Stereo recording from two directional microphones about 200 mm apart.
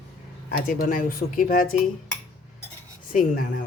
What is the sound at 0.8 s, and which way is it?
Speech, 40° left (ahead or behind).